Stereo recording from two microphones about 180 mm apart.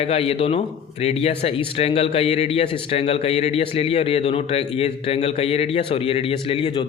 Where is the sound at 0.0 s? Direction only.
35° left (ahead or behind).